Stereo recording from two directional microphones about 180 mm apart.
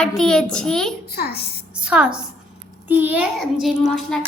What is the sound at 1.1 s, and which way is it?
Speech, 60° left (ahead or behind).